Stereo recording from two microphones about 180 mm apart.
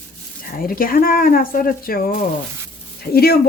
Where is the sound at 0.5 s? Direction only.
55° left (ahead or behind).